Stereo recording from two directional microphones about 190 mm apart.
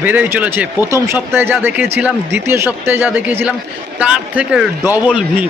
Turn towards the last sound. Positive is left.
turn(degrees=-5)  # may be behind; listen again after turning